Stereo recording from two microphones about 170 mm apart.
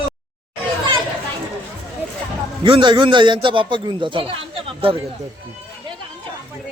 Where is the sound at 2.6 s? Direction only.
30° right (ahead or behind).